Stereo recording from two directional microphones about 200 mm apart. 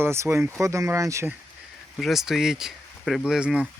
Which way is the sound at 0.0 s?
10° right (ahead or behind).